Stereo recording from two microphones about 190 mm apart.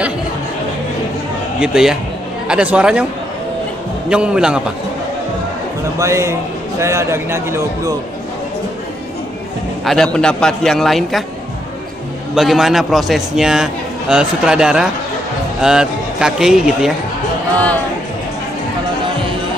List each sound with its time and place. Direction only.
1.6 s a man's voice: 5° right (ahead or behind)
4.1 s a man's voice: 5° right (ahead or behind)
5.9 s a man's voice: 15° right (ahead or behind)
10.1 s a man's voice: 5° left (ahead or behind)
12.4 s a man's voice: centre (ahead or behind)